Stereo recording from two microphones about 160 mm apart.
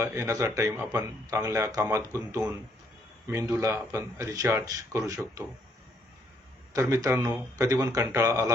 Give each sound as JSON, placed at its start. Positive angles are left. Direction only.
{"t": 0.0, "sound": "a man's voice", "side_deg": -20}
{"t": 3.2, "sound": "a man's voice", "side_deg": -20}
{"t": 6.7, "sound": "a man's voice", "side_deg": -20}